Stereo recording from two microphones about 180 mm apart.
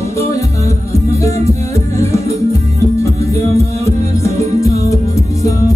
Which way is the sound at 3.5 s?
15° left (ahead or behind).